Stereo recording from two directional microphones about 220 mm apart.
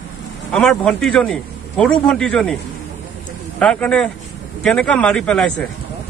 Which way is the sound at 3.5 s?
5° left (ahead or behind).